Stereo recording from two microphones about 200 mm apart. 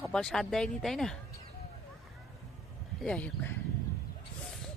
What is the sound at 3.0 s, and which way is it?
Speech, 5° left (ahead or behind).